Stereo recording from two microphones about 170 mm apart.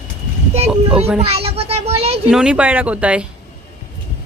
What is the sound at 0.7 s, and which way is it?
Children playing, 10° right (ahead or behind).